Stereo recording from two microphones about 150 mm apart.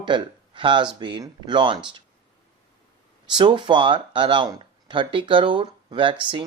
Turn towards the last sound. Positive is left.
turn(degrees=-35)  # may be behind; listen again after turning